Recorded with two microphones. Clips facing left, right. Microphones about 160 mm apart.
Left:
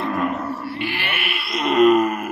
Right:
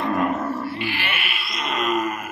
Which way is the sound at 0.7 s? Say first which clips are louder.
Left 1 dB; 60° left (ahead or behind).